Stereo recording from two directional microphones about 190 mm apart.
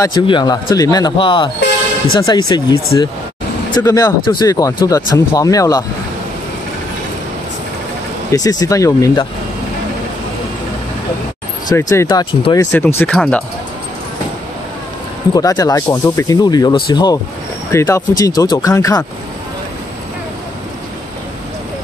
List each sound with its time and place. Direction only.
0.0 s speech: 20° left (ahead or behind)
8.5 s speech: 20° left (ahead or behind)
11.7 s speech: 15° left (ahead or behind)
12.7 s speech: 10° left (ahead or behind)
15.3 s speech: 20° left (ahead or behind)